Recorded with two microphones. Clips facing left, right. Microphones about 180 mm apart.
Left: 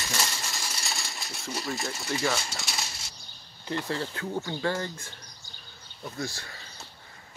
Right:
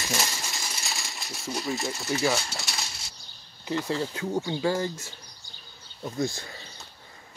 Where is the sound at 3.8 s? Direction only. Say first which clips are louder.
Right 3 dB; 15° right (ahead or behind).